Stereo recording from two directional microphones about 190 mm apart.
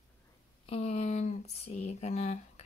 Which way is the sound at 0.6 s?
35° left (ahead or behind).